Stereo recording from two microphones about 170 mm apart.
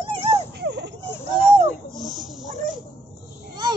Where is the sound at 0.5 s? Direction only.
90° right.